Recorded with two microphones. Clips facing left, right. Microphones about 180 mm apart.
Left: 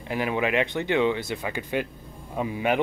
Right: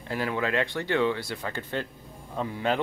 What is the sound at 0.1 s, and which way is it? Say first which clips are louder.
Speech: left 3 dB; 15° left (ahead or behind).